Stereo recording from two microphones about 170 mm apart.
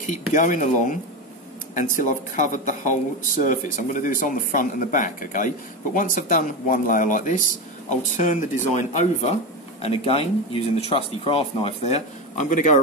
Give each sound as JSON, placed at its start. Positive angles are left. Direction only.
{"t": 0.0, "sound": "speech", "side_deg": 50}